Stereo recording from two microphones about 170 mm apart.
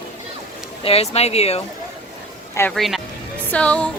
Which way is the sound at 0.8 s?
35° left (ahead or behind).